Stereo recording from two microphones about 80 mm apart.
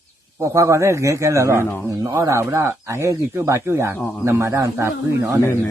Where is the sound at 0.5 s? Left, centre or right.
Right.